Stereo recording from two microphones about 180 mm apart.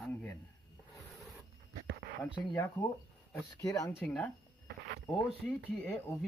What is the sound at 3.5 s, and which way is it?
Speech, 20° left (ahead or behind).